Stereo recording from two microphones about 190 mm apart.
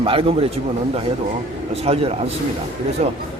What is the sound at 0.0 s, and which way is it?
Speech, 30° right (ahead or behind).